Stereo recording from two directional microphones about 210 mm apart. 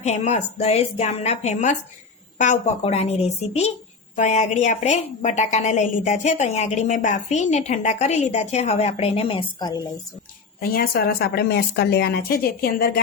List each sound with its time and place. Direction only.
0.0 s a woman's voice: 35° left (ahead or behind)
10.6 s a woman's voice: 45° left (ahead or behind)